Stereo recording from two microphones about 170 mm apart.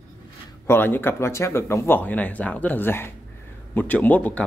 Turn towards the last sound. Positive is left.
turn(degrees=10)  # may be behind; listen again after turning